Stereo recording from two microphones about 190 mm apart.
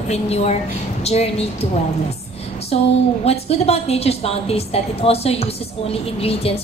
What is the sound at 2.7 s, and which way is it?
A woman's voice, 30° left (ahead or behind).